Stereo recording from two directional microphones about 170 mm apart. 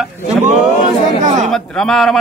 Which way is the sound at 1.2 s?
45° right (ahead or behind).